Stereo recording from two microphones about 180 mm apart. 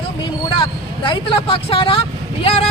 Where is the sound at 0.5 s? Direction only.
30° left (ahead or behind).